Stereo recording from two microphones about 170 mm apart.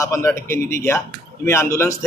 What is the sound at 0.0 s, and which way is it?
Speech, 15° left (ahead or behind).